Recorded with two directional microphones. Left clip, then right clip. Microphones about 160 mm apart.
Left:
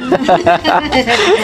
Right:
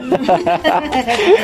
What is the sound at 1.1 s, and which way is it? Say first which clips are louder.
Speech: even; 15° right (ahead or behind).